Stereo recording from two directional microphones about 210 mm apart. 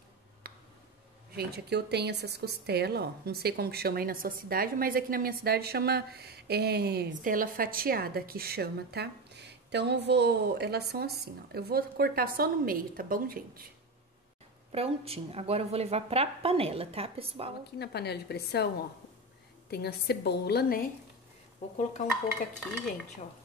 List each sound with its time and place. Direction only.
0.4 s a sound: 45° right (ahead or behind)
1.3 s a woman's voice: 50° right (ahead or behind)
14.7 s a woman's voice: 30° right (ahead or behind)
17.7 s a woman's voice: 50° left (ahead or behind)
19.7 s a woman's voice: 50° left (ahead or behind)
21.7 s dishes: 35° left (ahead or behind)